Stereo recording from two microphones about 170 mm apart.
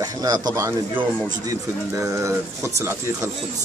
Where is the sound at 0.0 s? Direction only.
20° right (ahead or behind).